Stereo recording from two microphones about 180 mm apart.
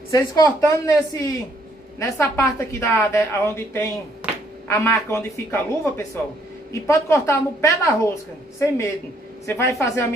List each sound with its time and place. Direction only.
0.1 s a woman's voice: 20° left (ahead or behind)